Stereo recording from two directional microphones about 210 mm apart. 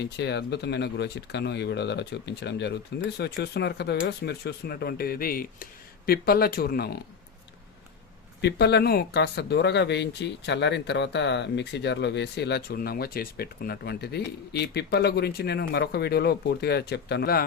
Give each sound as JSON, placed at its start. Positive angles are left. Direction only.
{"t": 0.0, "sound": "speech", "side_deg": 55}
{"t": 8.4, "sound": "speech", "side_deg": 50}